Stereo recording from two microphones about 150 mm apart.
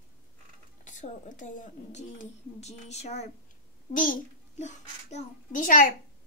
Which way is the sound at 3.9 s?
60° left (ahead or behind).